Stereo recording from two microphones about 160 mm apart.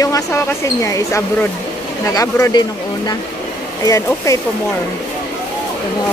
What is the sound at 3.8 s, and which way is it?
Speech, 20° left (ahead or behind).